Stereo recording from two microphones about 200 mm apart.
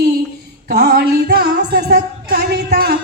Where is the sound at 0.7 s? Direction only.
55° right (ahead or behind).